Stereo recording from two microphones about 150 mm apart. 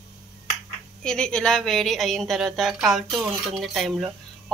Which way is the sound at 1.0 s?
5° left (ahead or behind).